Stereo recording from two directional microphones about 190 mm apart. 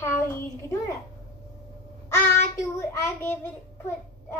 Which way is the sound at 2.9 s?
15° left (ahead or behind).